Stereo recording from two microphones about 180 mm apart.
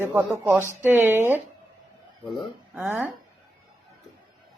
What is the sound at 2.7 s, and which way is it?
Speech, 10° right (ahead or behind).